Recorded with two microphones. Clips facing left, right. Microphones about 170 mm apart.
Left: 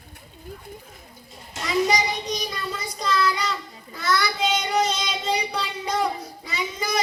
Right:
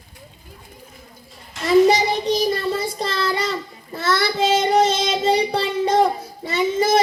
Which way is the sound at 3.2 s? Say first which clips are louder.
Right 3 dB; 50° right (ahead or behind).